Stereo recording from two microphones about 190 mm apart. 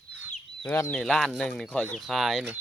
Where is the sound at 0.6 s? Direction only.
10° left (ahead or behind).